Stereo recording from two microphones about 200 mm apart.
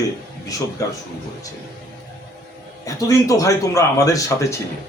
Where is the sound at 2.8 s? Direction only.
15° left (ahead or behind).